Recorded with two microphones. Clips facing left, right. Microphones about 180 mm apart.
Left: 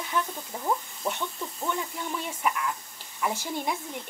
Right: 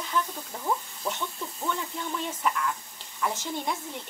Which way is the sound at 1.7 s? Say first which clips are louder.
Left 1 dB; 15° left (ahead or behind).